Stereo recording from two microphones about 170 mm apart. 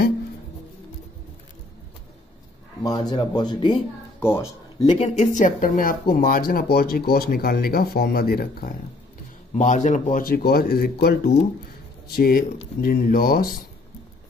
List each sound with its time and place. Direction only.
2.8 s speech: 20° left (ahead or behind)
4.2 s speech: 15° left (ahead or behind)
4.8 s speech: 40° left (ahead or behind); by 8.7 s 60° left (ahead or behind)
9.5 s speech: 45° left (ahead or behind)